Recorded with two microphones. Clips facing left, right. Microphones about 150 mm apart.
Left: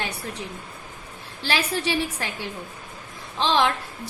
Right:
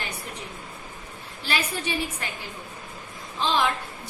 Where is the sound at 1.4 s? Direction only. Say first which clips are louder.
Left 4 dB; 85° left.